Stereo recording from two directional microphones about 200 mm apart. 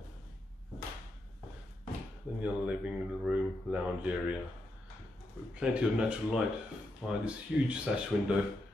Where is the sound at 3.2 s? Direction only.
5° right (ahead or behind).